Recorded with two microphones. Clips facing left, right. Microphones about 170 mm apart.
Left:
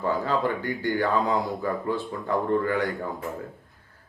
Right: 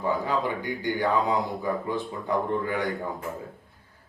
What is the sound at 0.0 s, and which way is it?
Speech, 15° right (ahead or behind).